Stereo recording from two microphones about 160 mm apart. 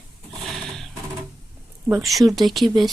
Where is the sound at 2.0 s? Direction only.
Centre (ahead or behind).